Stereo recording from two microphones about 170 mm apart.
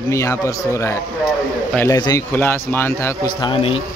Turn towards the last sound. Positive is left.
turn(degrees=30)  # may be behind; listen again after turning